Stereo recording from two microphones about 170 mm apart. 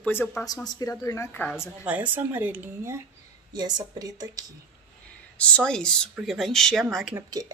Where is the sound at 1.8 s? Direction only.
10° right (ahead or behind).